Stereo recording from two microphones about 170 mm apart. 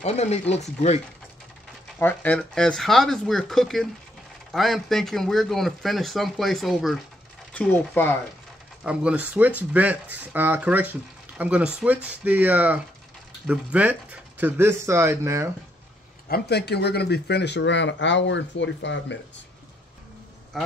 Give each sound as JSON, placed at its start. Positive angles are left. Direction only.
{"t": 0.0, "sound": "speech", "side_deg": 40}
{"t": 2.0, "sound": "speech", "side_deg": 10}
{"t": 8.8, "sound": "speech", "side_deg": -5}
{"t": 16.3, "sound": "speech", "side_deg": 70}
{"t": 20.5, "sound": "speech", "side_deg": 0}